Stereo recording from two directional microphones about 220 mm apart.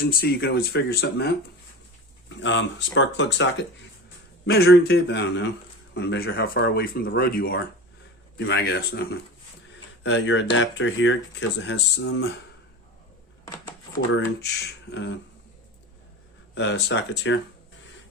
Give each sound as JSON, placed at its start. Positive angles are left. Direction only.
{"t": 0.0, "sound": "speech", "side_deg": 45}
{"t": 2.4, "sound": "speech", "side_deg": 55}
{"t": 13.4, "sound": "a sound", "side_deg": 10}
{"t": 14.9, "sound": "speech", "side_deg": 55}
{"t": 16.6, "sound": "speech", "side_deg": 55}